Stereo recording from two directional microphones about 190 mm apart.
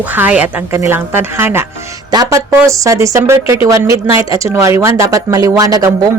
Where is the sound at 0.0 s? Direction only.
10° right (ahead or behind).